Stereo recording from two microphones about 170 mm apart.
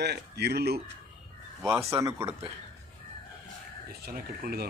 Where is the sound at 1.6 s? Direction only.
15° right (ahead or behind).